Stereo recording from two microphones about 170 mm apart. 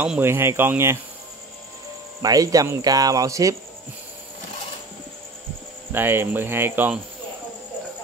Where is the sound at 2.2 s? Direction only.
20° right (ahead or behind).